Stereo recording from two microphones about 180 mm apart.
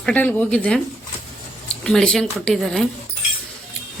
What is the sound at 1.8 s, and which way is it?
Speech, 5° left (ahead or behind).